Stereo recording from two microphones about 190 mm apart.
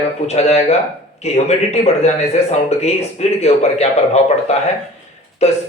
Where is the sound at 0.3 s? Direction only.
35° left (ahead or behind).